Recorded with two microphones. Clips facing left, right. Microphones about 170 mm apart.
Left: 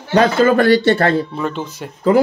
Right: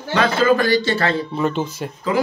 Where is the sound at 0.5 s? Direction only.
60° left (ahead or behind).